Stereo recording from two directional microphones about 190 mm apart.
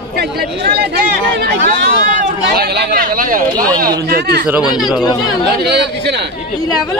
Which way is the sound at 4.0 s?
60° right (ahead or behind).